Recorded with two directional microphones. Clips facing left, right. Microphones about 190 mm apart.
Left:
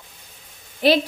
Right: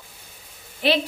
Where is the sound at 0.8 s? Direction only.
40° left (ahead or behind).